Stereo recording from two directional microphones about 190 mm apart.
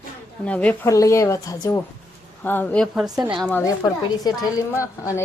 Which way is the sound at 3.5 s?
20° left (ahead or behind).